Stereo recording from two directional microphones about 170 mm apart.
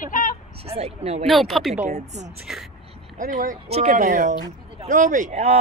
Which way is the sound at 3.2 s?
50° right (ahead or behind).